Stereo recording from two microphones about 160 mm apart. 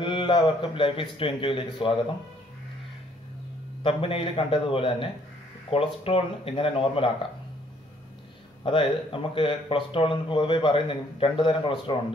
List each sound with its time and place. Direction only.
0.0 s speech: 30° left (ahead or behind)
3.8 s speech: 35° left (ahead or behind)
8.6 s speech: 35° left (ahead or behind)